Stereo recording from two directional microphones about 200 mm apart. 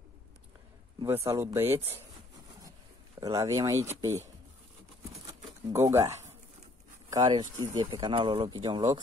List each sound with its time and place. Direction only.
0.9 s speech: 15° right (ahead or behind)
3.2 s speech: 15° right (ahead or behind)
5.2 s a sound: 15° right (ahead or behind)
7.1 s speech: 20° right (ahead or behind)